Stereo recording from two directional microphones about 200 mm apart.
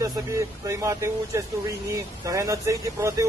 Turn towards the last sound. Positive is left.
turn(degrees=-15)  # may be behind; listen again after turning